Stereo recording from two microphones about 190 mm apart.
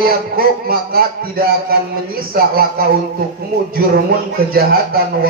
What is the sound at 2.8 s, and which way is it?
Speech, 50° right (ahead or behind).